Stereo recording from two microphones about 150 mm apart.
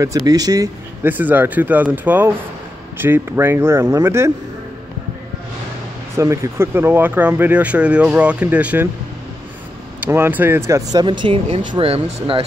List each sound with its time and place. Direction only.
0.0 s speech: 25° right (ahead or behind)
1.0 s speech: 10° right (ahead or behind)
6.1 s speech: 20° right (ahead or behind)
9.9 s speech: 15° right (ahead or behind)
10.7 s speech: 25° right (ahead or behind)